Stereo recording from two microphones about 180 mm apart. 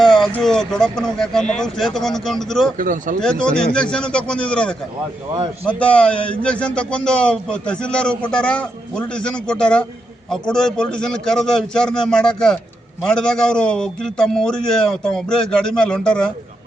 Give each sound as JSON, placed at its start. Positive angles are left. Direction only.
{"t": 0.0, "sound": "speech", "side_deg": 0}
{"t": 2.7, "sound": "speech", "side_deg": -50}
{"t": 3.2, "sound": "a man's voice", "side_deg": 5}